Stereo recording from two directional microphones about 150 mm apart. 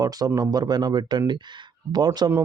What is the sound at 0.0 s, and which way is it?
Speech, 25° right (ahead or behind).